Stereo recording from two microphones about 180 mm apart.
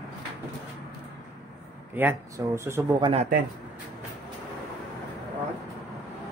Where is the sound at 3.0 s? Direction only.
35° right (ahead or behind).